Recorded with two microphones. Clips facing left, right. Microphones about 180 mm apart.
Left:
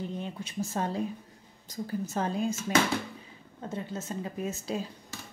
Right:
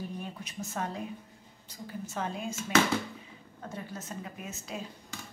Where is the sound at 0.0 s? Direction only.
25° left (ahead or behind).